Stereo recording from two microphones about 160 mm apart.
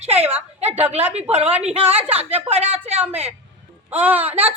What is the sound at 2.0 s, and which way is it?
A woman's voice, 40° right (ahead or behind).